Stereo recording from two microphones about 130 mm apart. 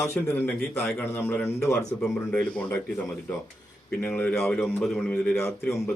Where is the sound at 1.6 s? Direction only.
5° left (ahead or behind).